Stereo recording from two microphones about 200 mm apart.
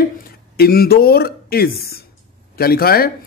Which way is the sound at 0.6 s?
50° left (ahead or behind).